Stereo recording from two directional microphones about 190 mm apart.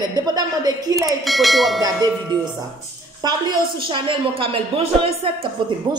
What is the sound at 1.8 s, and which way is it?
Speech, 20° right (ahead or behind).